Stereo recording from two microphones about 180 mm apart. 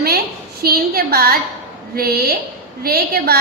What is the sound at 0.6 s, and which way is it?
A woman's voice, 60° right (ahead or behind).